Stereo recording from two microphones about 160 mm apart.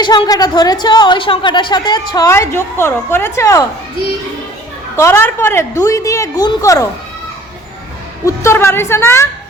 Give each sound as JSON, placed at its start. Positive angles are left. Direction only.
{"t": 0.0, "sound": "a woman's voice", "side_deg": 25}
{"t": 4.9, "sound": "a woman's voice", "side_deg": 15}
{"t": 8.2, "sound": "a woman's voice", "side_deg": 20}